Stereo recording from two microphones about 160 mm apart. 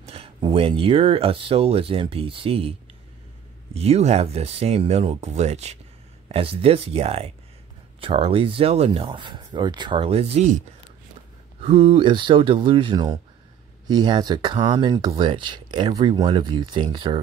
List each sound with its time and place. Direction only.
0.0 s speech: 35° right (ahead or behind)
3.7 s speech: 40° right (ahead or behind)
11.6 s speech: 40° right (ahead or behind)